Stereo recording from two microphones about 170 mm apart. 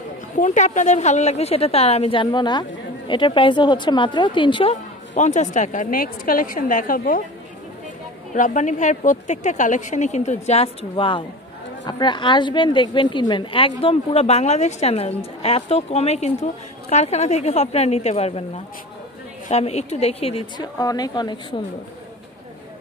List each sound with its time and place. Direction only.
0.4 s a woman's voice: 50° left (ahead or behind); by 4.7 s 30° left (ahead or behind)
5.1 s a woman's voice: 45° left (ahead or behind)
8.4 s a woman's voice: 45° left (ahead or behind)
19.5 s a woman's voice: 40° left (ahead or behind)
20.8 s speech: 20° left (ahead or behind)